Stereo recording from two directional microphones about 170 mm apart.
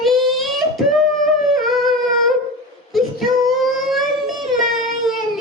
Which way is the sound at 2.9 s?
Centre (ahead or behind).